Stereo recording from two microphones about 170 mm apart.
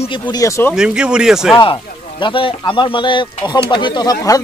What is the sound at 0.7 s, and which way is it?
Speech, 5° right (ahead or behind).